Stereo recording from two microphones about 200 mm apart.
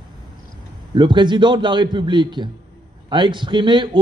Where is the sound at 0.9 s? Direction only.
25° right (ahead or behind).